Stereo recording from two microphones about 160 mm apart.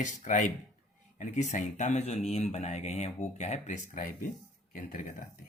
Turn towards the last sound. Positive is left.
turn(degrees=55)  # may be behind; listen again after turning